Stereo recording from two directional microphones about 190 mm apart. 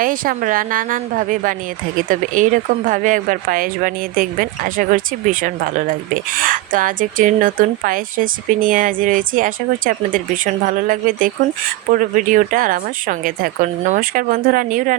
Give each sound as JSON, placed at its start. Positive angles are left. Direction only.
{"t": 0.0, "sound": "speech", "side_deg": -45}